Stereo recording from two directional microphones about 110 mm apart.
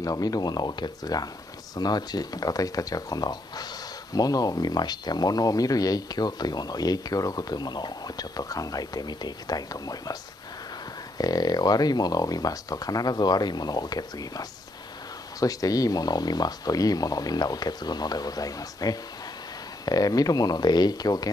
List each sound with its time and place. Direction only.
0.0 s speech: 35° left (ahead or behind)
11.1 s speech: 35° left (ahead or behind)
15.4 s speech: 35° left (ahead or behind)